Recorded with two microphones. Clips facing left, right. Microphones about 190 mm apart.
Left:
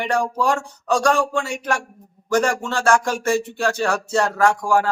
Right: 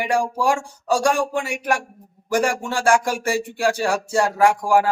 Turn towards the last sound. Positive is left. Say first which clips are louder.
# right 1 dB
turn(degrees=-15)  # may be behind; listen again after turning